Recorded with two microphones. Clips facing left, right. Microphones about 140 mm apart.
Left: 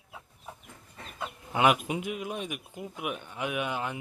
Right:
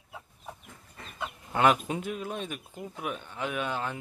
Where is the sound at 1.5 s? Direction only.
10° left (ahead or behind).